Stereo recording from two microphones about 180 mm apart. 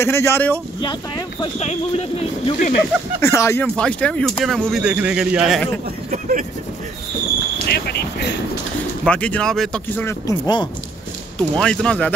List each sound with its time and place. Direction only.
0.0 s speech: 15° left (ahead or behind)
0.7 s speech: 25° left (ahead or behind)
3.2 s speech: 15° left (ahead or behind); by 5.7 s centre (ahead or behind)
6.0 s speech: 45° right (ahead or behind)
7.7 s speech: 60° left (ahead or behind)
9.0 s speech: 5° left (ahead or behind); by 10.7 s 25° left (ahead or behind)
11.3 s speech: 5° left (ahead or behind)